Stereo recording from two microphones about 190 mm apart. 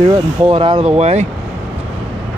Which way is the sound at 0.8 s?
35° right (ahead or behind).